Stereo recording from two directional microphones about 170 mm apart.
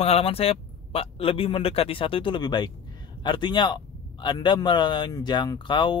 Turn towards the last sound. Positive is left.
turn(degrees=30)  # may be behind; listen again after turning